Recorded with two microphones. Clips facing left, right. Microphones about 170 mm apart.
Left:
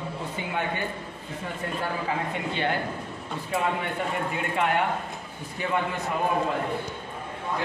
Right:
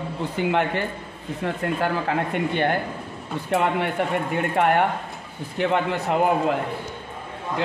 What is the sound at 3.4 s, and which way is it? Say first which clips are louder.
Speech: right 6 dB; 70° right (ahead or behind).